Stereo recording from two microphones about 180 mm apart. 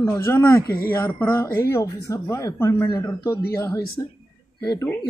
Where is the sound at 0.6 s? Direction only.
55° left (ahead or behind).